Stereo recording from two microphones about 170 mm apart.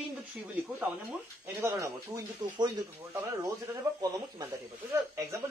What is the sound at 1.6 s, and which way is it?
Speech, 15° right (ahead or behind).